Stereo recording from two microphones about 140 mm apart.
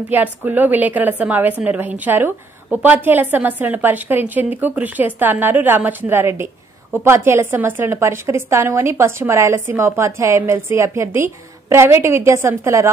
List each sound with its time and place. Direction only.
0.1 s a woman's voice: 10° right (ahead or behind)